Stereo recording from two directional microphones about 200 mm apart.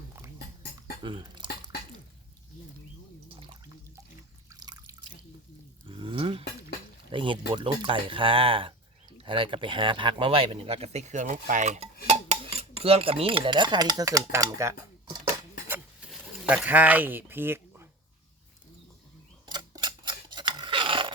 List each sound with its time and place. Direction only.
1.0 s dishes: 25° right (ahead or behind)
4.6 s drip: 20° right (ahead or behind)
5.9 s speech: 25° right (ahead or behind)
12.0 s cutlery: 30° right (ahead or behind); by 14.8 s 15° right (ahead or behind)
15.6 s pigeon: 10° right (ahead or behind)
19.5 s scissors: 20° right (ahead or behind)